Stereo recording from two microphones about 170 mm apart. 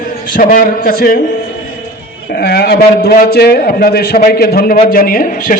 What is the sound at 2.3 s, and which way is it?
A man's voice, 65° left (ahead or behind).